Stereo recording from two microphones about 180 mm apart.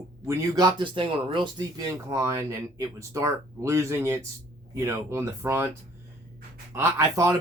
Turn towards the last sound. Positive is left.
turn(degrees=-15)  # may be behind; listen again after turning